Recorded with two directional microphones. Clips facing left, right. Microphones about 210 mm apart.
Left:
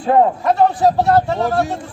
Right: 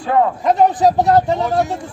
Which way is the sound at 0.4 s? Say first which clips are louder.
Right 1 dB; 15° right (ahead or behind).